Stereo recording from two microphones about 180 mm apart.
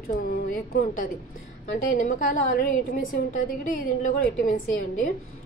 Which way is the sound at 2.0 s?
45° left (ahead or behind).